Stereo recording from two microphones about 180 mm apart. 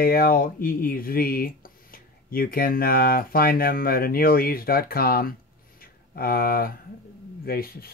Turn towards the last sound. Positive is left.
turn(degrees=55)  # may be behind; listen again after turning